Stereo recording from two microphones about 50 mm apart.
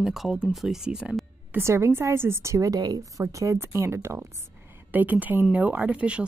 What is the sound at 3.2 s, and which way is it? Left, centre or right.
Speech, right.